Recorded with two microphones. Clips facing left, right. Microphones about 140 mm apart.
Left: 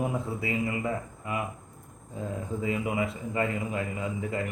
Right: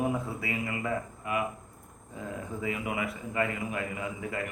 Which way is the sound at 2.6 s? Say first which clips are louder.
Left 4 dB; 25° left (ahead or behind).